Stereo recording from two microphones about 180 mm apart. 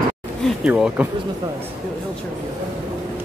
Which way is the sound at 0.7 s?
5° right (ahead or behind).